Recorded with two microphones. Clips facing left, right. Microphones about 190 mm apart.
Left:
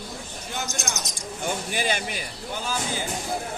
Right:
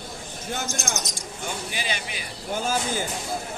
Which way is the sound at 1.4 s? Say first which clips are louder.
Left 5 dB; 50° left (ahead or behind).